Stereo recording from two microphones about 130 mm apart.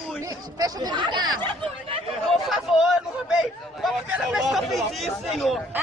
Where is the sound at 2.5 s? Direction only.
5° right (ahead or behind).